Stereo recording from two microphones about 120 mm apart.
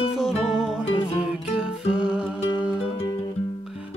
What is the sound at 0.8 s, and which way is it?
Music, 55° left (ahead or behind).